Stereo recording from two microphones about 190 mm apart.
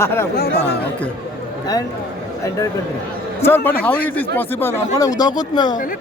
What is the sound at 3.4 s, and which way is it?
Speech, 10° left (ahead or behind).